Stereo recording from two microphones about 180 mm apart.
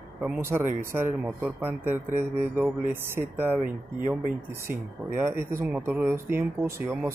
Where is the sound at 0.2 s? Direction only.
15° right (ahead or behind).